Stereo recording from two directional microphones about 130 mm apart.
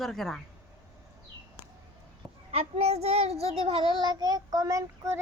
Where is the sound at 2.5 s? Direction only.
55° right (ahead or behind).